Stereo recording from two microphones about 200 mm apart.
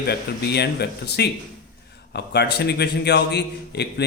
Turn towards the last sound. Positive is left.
turn(degrees=60)  # may be behind; listen again after turning